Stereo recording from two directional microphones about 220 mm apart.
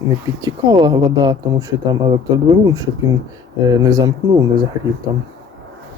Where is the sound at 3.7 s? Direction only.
15° right (ahead or behind).